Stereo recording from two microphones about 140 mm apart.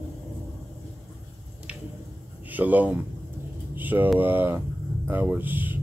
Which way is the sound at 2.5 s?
10° right (ahead or behind).